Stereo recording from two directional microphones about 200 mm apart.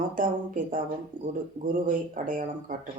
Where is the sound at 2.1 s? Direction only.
40° right (ahead or behind).